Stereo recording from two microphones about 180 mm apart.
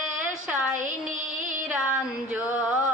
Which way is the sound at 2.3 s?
10° right (ahead or behind).